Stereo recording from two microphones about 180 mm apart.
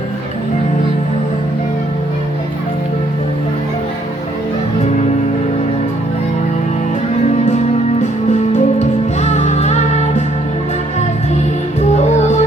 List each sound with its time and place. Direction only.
8.3 s music: 40° left (ahead or behind)
12.0 s music: 40° left (ahead or behind)